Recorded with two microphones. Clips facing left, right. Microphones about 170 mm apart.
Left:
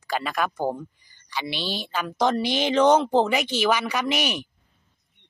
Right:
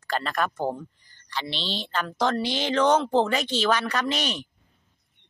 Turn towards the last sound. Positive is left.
turn(degrees=10)  # may be behind; listen again after turning